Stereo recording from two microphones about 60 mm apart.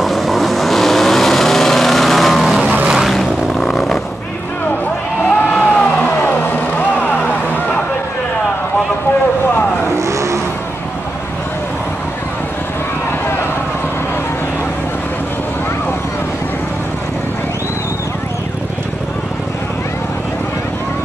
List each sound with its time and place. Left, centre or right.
0.0 s vehicle: centre
2.6 s vehicle: right
3.1 s vehicle: centre
5.5 s vehicle: left
9.9 s vehicle: right